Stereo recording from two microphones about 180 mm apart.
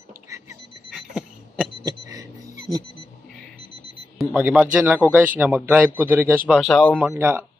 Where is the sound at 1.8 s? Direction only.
20° right (ahead or behind).